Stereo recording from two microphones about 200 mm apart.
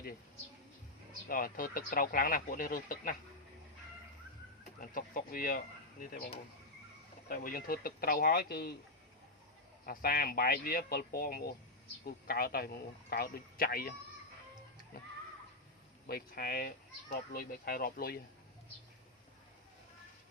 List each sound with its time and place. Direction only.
1.3 s speech: 45° left (ahead or behind)
4.8 s speech: 45° left (ahead or behind)
7.3 s speech: 45° left (ahead or behind)
9.8 s speech: 45° left (ahead or behind)
16.0 s speech: 50° left (ahead or behind)